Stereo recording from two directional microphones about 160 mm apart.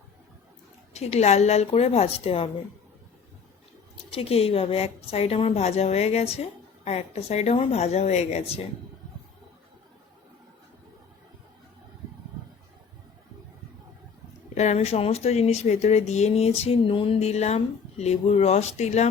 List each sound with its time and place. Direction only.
0.9 s a woman's voice: 40° left (ahead or behind)
4.1 s a woman's voice: 40° left (ahead or behind)
14.5 s speech: 45° left (ahead or behind)